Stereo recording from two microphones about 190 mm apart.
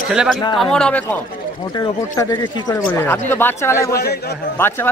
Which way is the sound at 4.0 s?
55° left (ahead or behind).